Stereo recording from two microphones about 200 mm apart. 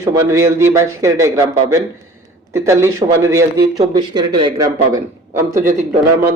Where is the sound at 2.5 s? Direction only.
15° right (ahead or behind).